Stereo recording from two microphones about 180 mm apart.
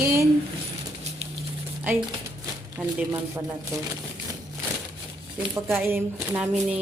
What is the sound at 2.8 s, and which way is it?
Speech, 10° right (ahead or behind).